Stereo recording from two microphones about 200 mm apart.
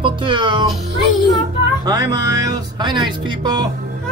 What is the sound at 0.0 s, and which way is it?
Speech, 25° right (ahead or behind).